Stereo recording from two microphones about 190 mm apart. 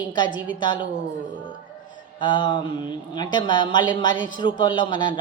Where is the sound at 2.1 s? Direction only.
25° left (ahead or behind).